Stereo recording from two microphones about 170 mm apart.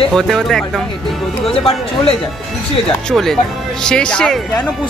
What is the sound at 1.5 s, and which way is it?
Speech, 35° left (ahead or behind).